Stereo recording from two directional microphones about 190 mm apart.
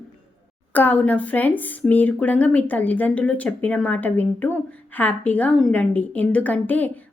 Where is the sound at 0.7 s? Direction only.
10° left (ahead or behind).